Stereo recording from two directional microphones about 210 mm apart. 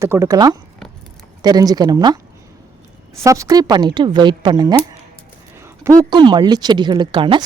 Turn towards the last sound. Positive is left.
turn(degrees=-25)  # may be behind; listen again after turning